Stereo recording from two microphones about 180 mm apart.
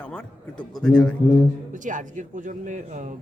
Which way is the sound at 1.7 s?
45° right (ahead or behind).